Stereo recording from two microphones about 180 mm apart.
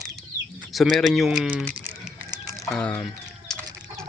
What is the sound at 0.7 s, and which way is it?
Speech, centre (ahead or behind).